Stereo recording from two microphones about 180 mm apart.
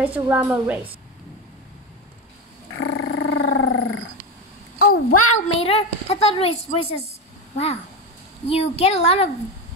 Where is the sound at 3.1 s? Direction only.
90° left.